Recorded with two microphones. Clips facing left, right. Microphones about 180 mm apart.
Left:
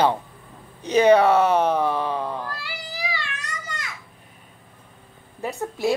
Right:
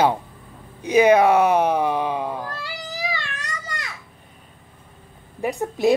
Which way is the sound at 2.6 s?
45° right (ahead or behind).